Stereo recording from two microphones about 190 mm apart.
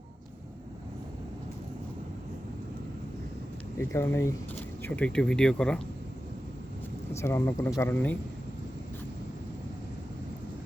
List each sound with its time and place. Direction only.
3.8 s speech: 15° left (ahead or behind)
7.1 s speech: 15° left (ahead or behind)